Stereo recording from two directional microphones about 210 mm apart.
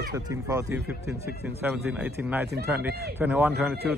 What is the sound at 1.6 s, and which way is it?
A man's voice, 5° right (ahead or behind).